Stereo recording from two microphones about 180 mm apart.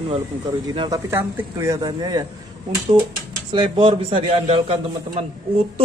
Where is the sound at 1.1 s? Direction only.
15° right (ahead or behind).